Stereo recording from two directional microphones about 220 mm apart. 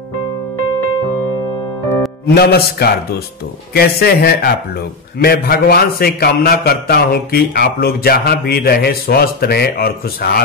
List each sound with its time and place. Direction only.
2.2 s a man's voice: 45° left (ahead or behind)